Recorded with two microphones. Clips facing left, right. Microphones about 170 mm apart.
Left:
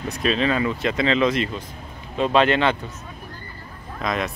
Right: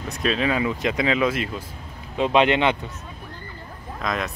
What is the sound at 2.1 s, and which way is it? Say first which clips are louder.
Speech: even; 15° right (ahead or behind).